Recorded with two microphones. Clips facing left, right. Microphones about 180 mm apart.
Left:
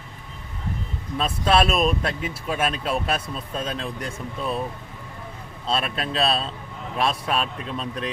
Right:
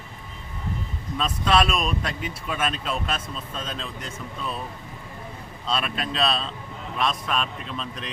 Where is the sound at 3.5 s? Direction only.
55° left (ahead or behind).